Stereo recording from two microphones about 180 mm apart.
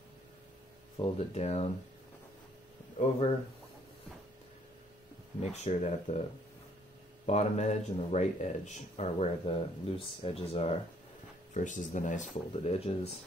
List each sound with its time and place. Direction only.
0.9 s speech: 30° left (ahead or behind)
5.4 s speech: 40° left (ahead or behind)
7.2 s speech: 40° left (ahead or behind)